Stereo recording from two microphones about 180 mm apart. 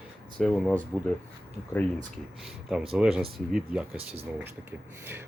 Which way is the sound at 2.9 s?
5° right (ahead or behind).